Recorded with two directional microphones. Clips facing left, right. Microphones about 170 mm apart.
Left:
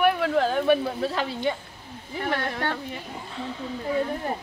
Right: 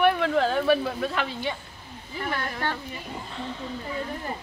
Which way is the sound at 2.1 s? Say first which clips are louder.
Left 3 dB; 65° left (ahead or behind).